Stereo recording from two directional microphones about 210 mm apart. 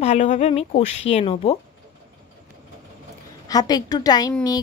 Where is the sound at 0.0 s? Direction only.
30° left (ahead or behind).